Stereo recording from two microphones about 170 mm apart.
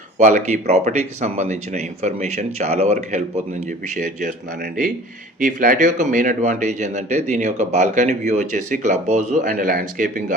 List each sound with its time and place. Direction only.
0.2 s speech: 45° right (ahead or behind)